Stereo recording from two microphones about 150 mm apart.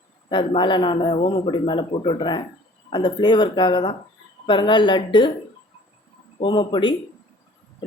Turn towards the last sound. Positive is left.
turn(degrees=30)  # may be behind; listen again after turning